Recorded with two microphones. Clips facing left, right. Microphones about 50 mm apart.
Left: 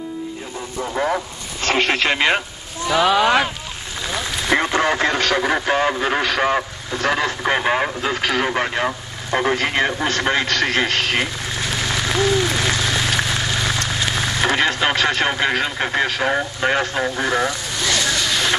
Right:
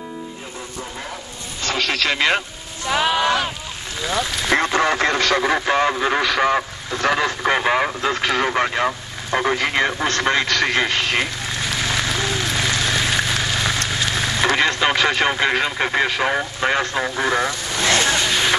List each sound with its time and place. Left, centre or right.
0.9 s speech: left
1.9 s speech: left
4.6 s speech: centre
10.6 s speech: centre
11.7 s a sound: centre
15.0 s speech: centre
17.7 s vehicle: right
18.2 s vehicle: centre